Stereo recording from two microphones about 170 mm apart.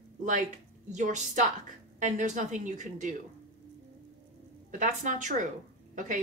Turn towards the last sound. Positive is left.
turn(degrees=-50)  # may be behind; listen again after turning